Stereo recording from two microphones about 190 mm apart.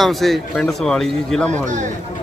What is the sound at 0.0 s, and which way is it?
Speech, centre (ahead or behind).